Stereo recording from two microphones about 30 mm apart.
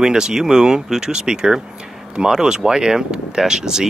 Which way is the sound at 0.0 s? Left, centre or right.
Right.